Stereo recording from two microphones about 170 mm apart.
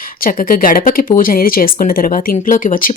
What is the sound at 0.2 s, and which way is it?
Speech, 55° left (ahead or behind).